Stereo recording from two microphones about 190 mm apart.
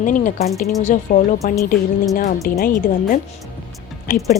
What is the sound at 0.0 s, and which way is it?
Speech, 45° left (ahead or behind).